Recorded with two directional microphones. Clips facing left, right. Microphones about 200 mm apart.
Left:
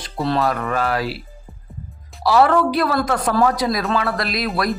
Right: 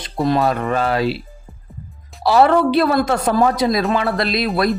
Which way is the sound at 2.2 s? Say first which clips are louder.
Right 2 dB; 25° right (ahead or behind).